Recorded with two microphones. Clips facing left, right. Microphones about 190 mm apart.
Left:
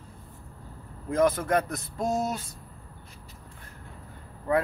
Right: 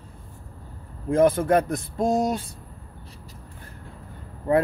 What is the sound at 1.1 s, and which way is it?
A man's voice, 30° right (ahead or behind).